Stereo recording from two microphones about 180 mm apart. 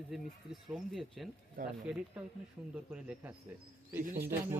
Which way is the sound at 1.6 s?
55° right (ahead or behind).